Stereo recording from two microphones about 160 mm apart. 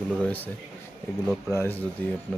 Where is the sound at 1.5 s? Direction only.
15° left (ahead or behind).